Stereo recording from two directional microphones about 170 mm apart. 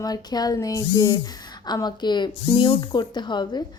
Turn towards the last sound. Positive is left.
turn(degrees=25)  # may be behind; listen again after turning